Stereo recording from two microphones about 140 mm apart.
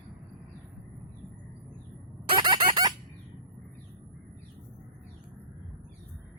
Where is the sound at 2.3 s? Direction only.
35° right (ahead or behind).